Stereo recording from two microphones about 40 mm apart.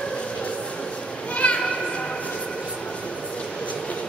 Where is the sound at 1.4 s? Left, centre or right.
Left.